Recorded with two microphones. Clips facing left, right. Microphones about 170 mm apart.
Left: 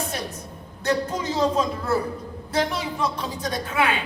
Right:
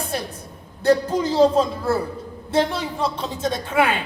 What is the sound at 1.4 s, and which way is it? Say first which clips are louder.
Speech: right 6 dB; 30° right (ahead or behind).